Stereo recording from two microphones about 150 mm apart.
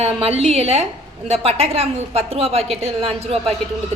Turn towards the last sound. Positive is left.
turn(degrees=-40)  # may be behind; listen again after turning